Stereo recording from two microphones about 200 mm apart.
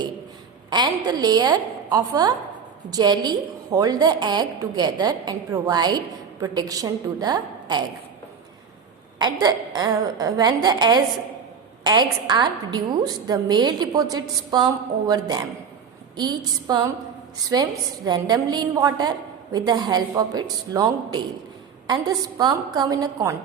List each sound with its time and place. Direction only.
0.7 s a woman's voice: 20° right (ahead or behind)
9.1 s a woman's voice: 20° right (ahead or behind)